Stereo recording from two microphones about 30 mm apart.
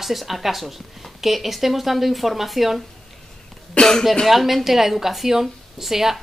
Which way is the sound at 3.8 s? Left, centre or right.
Left.